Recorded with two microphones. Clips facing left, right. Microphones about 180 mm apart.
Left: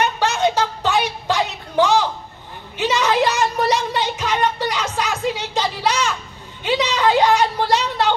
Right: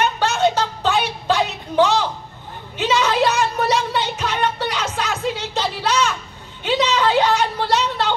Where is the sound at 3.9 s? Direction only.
15° left (ahead or behind).